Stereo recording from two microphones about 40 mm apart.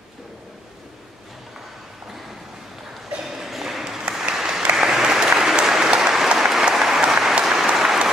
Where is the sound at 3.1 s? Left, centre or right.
Centre.